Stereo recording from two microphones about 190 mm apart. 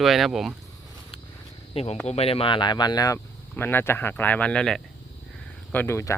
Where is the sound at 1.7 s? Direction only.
30° left (ahead or behind); by 6.1 s 15° left (ahead or behind).